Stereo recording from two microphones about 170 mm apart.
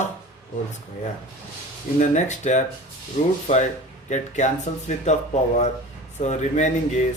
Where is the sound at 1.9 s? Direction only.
45° left (ahead or behind).